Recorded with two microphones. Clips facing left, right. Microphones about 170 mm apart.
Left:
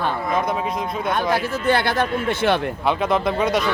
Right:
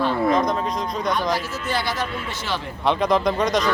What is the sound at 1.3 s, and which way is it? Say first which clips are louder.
A man's voice: left 5 dB; 60° left (ahead or behind).